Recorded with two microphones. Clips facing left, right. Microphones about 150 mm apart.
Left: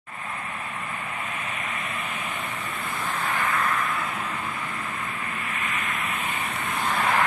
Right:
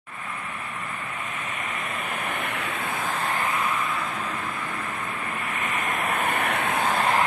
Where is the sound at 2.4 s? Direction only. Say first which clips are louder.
Right 3 dB; 70° right (ahead or behind).